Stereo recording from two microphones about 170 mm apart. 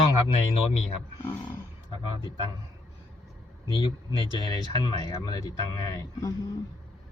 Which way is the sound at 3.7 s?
25° left (ahead or behind).